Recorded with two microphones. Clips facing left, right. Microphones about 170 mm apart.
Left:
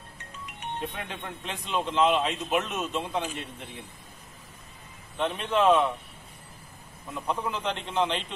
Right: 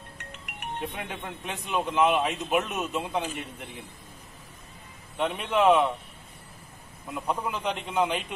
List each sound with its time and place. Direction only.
0.2 s music: 70° right (ahead or behind)
0.9 s a man's voice: 10° right (ahead or behind)
5.1 s a man's voice: 10° right (ahead or behind)
7.1 s a man's voice: 10° right (ahead or behind)